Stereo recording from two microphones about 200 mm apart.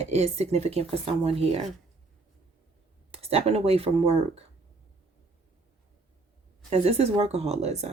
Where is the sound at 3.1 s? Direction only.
30° right (ahead or behind).